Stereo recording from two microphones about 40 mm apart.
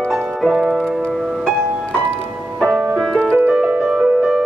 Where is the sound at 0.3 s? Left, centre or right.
Centre.